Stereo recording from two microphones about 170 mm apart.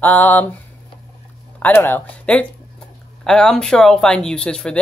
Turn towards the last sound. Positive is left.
turn(degrees=5)  # may be behind; listen again after turning